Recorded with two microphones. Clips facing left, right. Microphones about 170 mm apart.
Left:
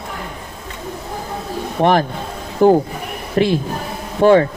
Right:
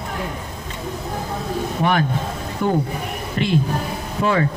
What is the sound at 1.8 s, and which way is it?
Speech, 35° left (ahead or behind).